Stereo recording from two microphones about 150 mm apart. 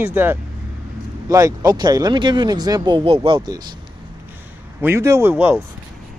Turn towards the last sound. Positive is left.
turn(degrees=-15)  # may be behind; listen again after turning